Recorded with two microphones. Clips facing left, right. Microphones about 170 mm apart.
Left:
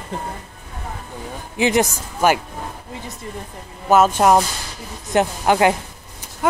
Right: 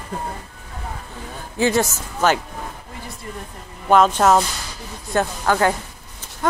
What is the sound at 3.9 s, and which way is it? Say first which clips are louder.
Speech: left 1 dB; 10° left (ahead or behind).